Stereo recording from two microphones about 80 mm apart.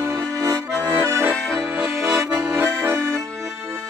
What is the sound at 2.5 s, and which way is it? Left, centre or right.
Accordion, right.